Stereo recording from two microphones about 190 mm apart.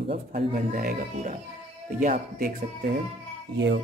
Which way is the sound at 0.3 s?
50° right (ahead or behind).